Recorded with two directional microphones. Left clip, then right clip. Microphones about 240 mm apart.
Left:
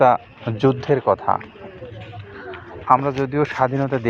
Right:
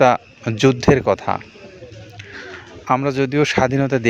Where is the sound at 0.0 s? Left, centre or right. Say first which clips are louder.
Right 1 dB; right.